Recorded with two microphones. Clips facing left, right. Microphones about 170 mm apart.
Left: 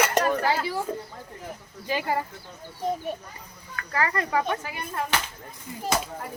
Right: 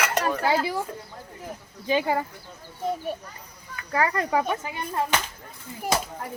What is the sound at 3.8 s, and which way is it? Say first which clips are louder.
Speech: right 2 dB; 15° right (ahead or behind).